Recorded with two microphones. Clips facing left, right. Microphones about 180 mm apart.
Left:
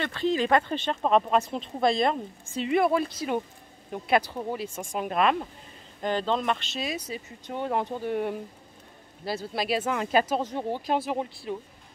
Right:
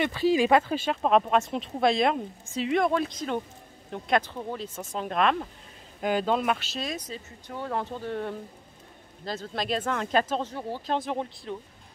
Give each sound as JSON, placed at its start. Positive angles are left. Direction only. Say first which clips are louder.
{"t": 0.0, "sound": "speech", "louder": "right 3 dB", "side_deg": -10}
{"t": 5.9, "sound": "speech", "louder": "right 1 dB", "side_deg": -10}
{"t": 7.4, "sound": "speech", "louder": "left 3 dB", "side_deg": 20}
{"t": 11.0, "sound": "speech", "louder": "left 1 dB", "side_deg": 5}